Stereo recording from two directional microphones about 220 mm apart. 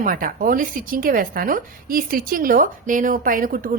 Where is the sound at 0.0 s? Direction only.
40° right (ahead or behind).